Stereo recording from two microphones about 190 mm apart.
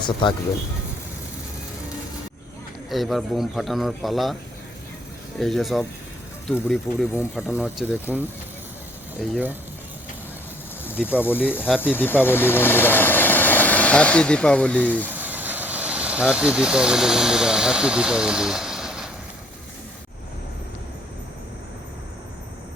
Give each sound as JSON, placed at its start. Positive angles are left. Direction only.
{"t": 0.0, "sound": "speech", "side_deg": 25}
{"t": 2.9, "sound": "a man's voice", "side_deg": 0}
{"t": 5.4, "sound": "a man's voice", "side_deg": 0}
{"t": 7.2, "sound": "a man's voice", "side_deg": -10}
{"t": 9.3, "sound": "speech", "side_deg": -10}
{"t": 11.0, "sound": "speech", "side_deg": 10}
{"t": 15.1, "sound": "speech", "side_deg": -10}